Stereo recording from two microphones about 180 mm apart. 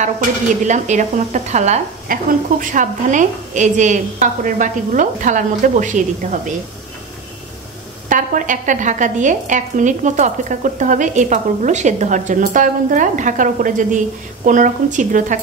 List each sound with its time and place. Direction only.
0.7 s a woman's voice: 40° right (ahead or behind)
8.1 s a woman's voice: 45° right (ahead or behind)